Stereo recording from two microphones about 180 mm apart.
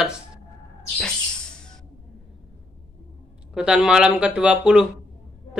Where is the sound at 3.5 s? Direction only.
5° right (ahead or behind).